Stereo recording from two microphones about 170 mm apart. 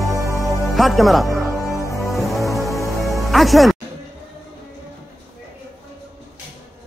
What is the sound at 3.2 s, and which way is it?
Speech, centre (ahead or behind).